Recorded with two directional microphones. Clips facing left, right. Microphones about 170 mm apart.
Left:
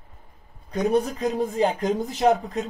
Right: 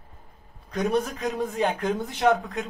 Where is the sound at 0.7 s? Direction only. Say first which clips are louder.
Left 3 dB; 30° left (ahead or behind).